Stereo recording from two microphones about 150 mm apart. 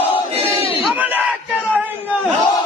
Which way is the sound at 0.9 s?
10° right (ahead or behind).